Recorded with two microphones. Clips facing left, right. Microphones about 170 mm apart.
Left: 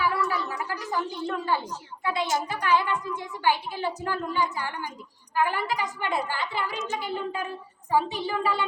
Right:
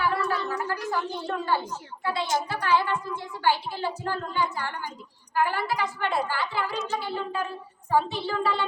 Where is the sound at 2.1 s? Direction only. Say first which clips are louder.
Even; 15° left (ahead or behind).